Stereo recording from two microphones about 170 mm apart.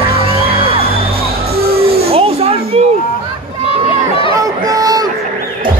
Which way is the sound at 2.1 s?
35° right (ahead or behind).